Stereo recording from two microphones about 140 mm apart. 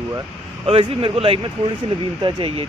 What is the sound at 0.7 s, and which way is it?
Speech, 45° right (ahead or behind).